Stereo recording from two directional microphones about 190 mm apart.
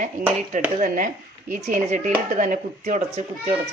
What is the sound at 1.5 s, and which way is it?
Speech, 40° right (ahead or behind).